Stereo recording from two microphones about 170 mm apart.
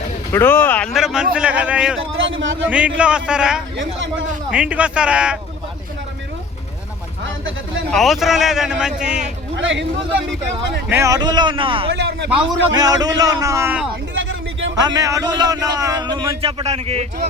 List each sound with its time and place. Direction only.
0.3 s speech: 15° left (ahead or behind)
0.9 s a man's voice: 5° right (ahead or behind)
2.2 s speech: 90° right
2.6 s a man's voice: 10° right (ahead or behind)
7.9 s a man's voice: centre (ahead or behind)
9.6 s speech: 90° right
10.8 s a man's voice: 15° right (ahead or behind); by 11.9 s 30° right (ahead or behind)
11.9 s speech: 90° right
12.7 s a man's voice: 20° right (ahead or behind)
14.1 s a sound: 90° right
14.8 s a man's voice: 20° right (ahead or behind); by 17.2 s 35° right (ahead or behind)